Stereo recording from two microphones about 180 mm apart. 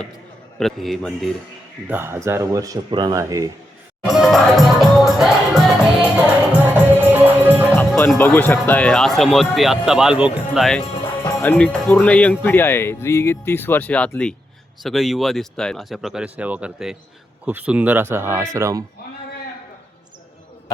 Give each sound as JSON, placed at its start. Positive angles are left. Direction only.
{"t": 0.6, "sound": "speech", "side_deg": 0}
{"t": 1.9, "sound": "speech", "side_deg": -15}
{"t": 4.0, "sound": "music", "side_deg": 0}
{"t": 8.2, "sound": "speech", "side_deg": 10}
{"t": 11.2, "sound": "music", "side_deg": 15}
{"t": 11.5, "sound": "speech", "side_deg": 5}